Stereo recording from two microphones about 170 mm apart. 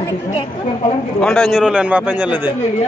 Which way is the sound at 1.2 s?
5° left (ahead or behind).